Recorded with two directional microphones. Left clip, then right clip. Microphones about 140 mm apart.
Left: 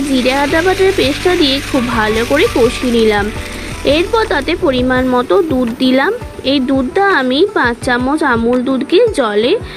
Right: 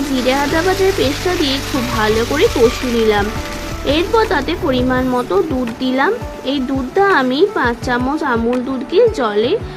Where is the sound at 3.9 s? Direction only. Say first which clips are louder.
Left 2 dB; 40° left (ahead or behind).